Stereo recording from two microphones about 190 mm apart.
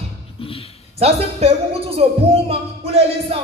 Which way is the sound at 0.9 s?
30° right (ahead or behind).